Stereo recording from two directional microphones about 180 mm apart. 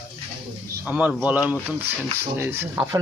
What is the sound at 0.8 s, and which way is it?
Speech, 10° right (ahead or behind).